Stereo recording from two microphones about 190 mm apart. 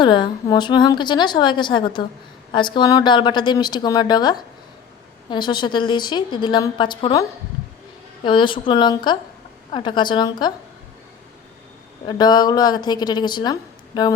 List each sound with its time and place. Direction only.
0.0 s a woman's voice: 25° left (ahead or behind)
12.0 s a woman's voice: 20° left (ahead or behind)